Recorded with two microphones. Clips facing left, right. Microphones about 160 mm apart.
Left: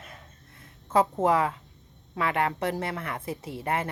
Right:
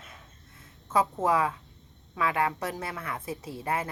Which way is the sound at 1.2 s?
30° left (ahead or behind).